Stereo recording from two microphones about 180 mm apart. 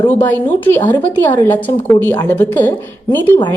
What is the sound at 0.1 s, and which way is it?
A woman's voice, 10° left (ahead or behind).